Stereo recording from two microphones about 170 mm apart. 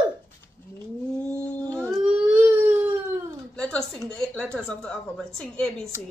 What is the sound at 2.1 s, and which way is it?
Baby cry, 10° right (ahead or behind).